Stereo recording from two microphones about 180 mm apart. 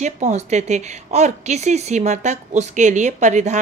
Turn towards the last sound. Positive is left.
turn(degrees=-40)  # may be behind; listen again after turning